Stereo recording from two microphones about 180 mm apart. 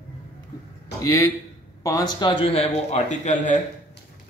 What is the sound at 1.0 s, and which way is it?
A man's voice, 15° left (ahead or behind).